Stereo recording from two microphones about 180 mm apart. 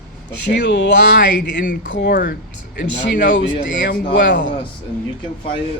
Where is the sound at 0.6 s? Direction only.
75° left (ahead or behind).